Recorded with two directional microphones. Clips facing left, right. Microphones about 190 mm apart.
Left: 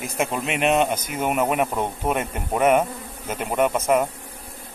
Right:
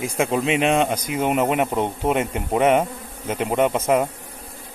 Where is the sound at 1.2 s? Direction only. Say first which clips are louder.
Right 2 dB; 25° right (ahead or behind).